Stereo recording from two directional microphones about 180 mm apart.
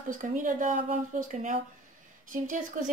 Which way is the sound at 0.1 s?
45° right (ahead or behind).